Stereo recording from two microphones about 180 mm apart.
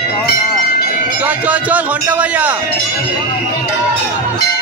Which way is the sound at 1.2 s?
10° right (ahead or behind).